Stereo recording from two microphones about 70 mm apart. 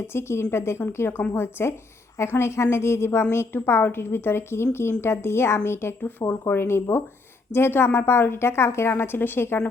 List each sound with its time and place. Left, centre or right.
0.1 s a woman's voice: left